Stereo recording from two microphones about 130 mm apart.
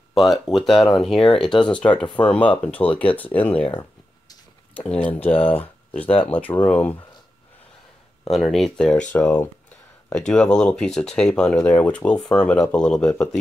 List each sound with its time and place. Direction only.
0.1 s speech: centre (ahead or behind)
4.7 s speech: 10° left (ahead or behind)
6.0 s speech: 45° left (ahead or behind)
6.3 s speech: 15° left (ahead or behind)
8.3 s speech: centre (ahead or behind)